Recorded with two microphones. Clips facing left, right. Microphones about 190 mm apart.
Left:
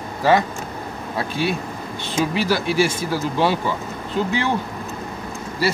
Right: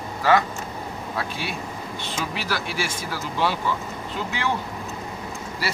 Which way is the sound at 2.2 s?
20° left (ahead or behind).